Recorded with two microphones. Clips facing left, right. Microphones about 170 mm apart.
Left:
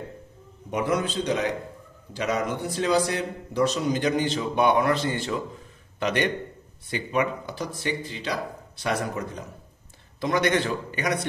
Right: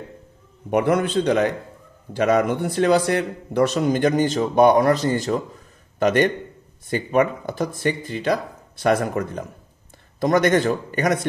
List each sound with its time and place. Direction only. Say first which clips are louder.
0.7 s a man's voice: right 6 dB; 60° right (ahead or behind)